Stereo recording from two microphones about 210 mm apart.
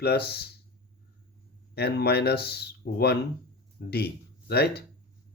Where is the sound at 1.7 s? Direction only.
50° left (ahead or behind).